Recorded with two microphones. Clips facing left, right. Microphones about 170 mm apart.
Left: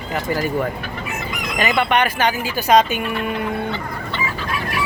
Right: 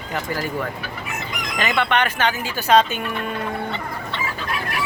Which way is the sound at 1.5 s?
10° left (ahead or behind).